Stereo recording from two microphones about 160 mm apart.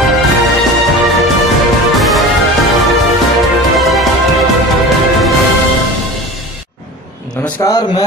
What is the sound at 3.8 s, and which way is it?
Music, centre (ahead or behind).